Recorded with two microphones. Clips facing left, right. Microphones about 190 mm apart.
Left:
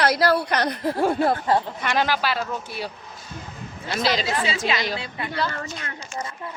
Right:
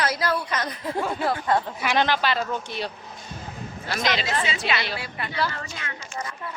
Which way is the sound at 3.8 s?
35° left (ahead or behind).